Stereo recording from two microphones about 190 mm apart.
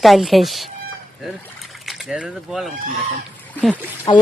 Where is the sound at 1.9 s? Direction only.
Centre (ahead or behind).